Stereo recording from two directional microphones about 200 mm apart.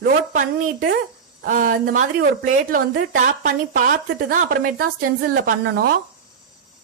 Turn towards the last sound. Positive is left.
turn(degrees=-50)  # may be behind; listen again after turning